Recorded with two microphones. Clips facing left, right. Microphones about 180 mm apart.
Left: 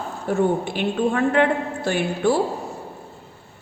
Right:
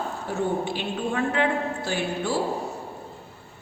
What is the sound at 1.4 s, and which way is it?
Speech, 55° left (ahead or behind).